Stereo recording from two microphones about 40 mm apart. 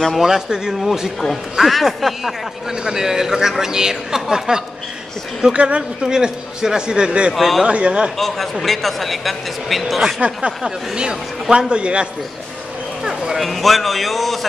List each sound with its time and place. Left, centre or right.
0.1 s a man's voice: centre
1.2 s a man's voice: centre
2.7 s a man's voice: centre
5.6 s a man's voice: right
6.0 s a man's voice: centre
7.3 s a man's voice: centre
7.6 s a man's voice: right
8.2 s a man's voice: centre
10.6 s a man's voice: centre
13.0 s a sound: centre
13.4 s a man's voice: centre